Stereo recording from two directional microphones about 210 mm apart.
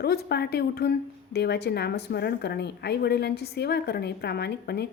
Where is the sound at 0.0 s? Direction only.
50° left (ahead or behind).